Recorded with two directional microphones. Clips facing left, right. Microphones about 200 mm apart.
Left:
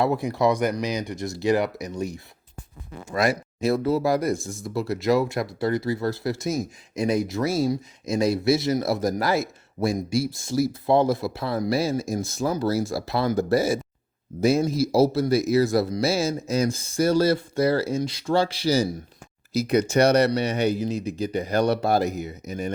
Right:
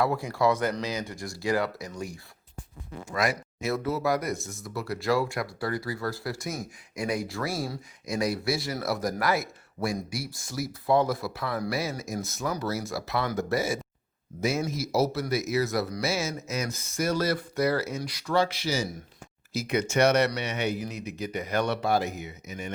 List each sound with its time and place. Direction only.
0.0 s speech: 20° left (ahead or behind); by 22.7 s 35° left (ahead or behind)